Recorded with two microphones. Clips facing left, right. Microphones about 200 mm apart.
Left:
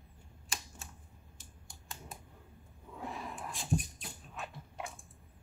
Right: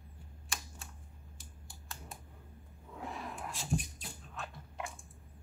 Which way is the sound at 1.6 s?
Centre (ahead or behind).